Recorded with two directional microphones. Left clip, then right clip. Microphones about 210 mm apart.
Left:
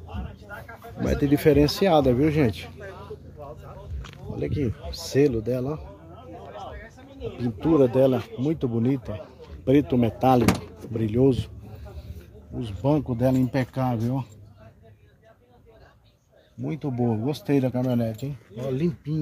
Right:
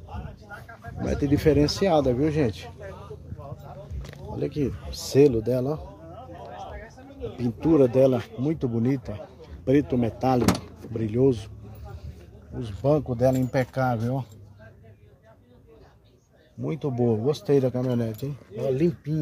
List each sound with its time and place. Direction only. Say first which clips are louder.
1.0 s speech: left 2 dB; 15° left (ahead or behind)
4.4 s speech: right 1 dB; centre (ahead or behind)
7.3 s speech: even; 5° right (ahead or behind); by 11.5 s 15° left (ahead or behind)
12.5 s speech: right 1 dB; 5° left (ahead or behind)
16.6 s speech: right 2 dB; 5° right (ahead or behind)